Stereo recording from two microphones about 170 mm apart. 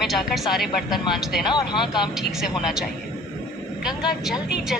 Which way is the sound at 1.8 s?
5° right (ahead or behind).